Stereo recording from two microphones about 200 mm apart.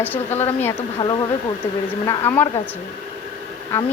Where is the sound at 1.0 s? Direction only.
20° left (ahead or behind).